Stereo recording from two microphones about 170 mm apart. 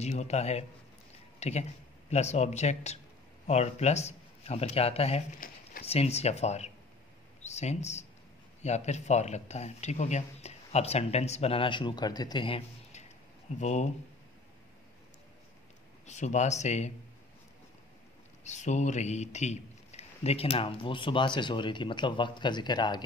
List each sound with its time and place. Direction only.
0.0 s a man's voice: 40° left (ahead or behind)
5.4 s a sound: 60° left (ahead or behind)
5.9 s a man's voice: 35° left (ahead or behind)
16.1 s speech: 40° left (ahead or behind)
18.4 s a man's voice: 45° left (ahead or behind); by 23.0 s 25° left (ahead or behind)